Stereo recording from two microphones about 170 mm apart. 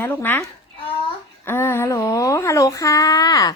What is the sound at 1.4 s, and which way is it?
Speech, 10° left (ahead or behind).